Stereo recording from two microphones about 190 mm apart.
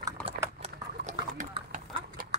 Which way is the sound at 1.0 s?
40° right (ahead or behind).